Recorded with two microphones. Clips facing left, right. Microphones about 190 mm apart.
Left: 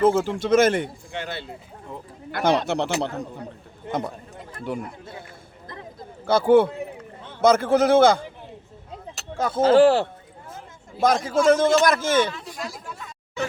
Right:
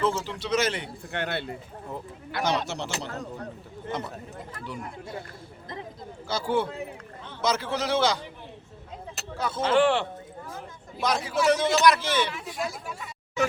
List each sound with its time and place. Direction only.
0.0 s speech: 50° left (ahead or behind)
1.1 s speech: 60° right (ahead or behind)
2.3 s speech: 55° left (ahead or behind)
4.7 s speech: 55° left (ahead or behind)
6.2 s speech: 55° left (ahead or behind)
9.4 s speech: 45° left (ahead or behind)
12.5 s speech: 5° right (ahead or behind)